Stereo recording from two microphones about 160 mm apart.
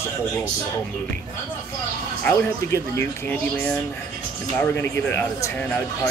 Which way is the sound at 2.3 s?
10° left (ahead or behind).